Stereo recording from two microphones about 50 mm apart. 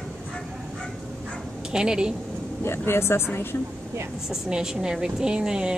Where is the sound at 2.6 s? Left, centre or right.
Left.